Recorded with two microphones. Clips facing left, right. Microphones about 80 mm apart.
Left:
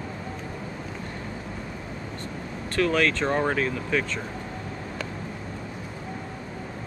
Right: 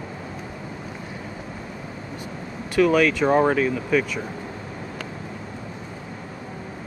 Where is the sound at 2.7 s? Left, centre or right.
Centre.